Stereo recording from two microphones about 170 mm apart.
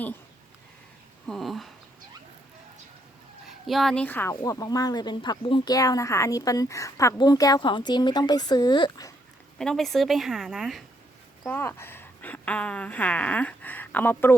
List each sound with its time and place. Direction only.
1.3 s a woman's voice: centre (ahead or behind)
3.4 s speech: centre (ahead or behind); by 9.1 s 25° left (ahead or behind)
9.6 s a woman's voice: centre (ahead or behind)
11.4 s speech: 15° left (ahead or behind)